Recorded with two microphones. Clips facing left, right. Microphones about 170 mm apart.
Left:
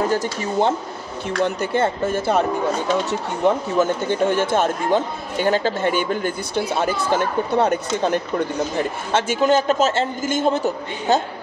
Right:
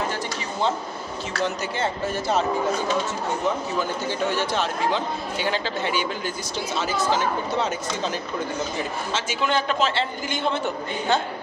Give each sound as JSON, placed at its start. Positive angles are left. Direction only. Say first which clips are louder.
{"t": 0.1, "sound": "speech", "louder": "left 8 dB", "side_deg": 55}